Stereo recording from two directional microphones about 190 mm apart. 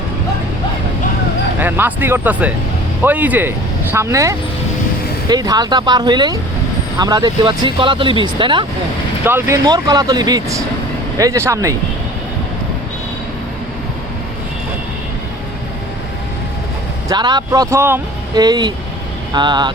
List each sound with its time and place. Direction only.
1.5 s speech: 10° right (ahead or behind)
9.2 s speech: 15° right (ahead or behind)
17.1 s speech: 20° right (ahead or behind)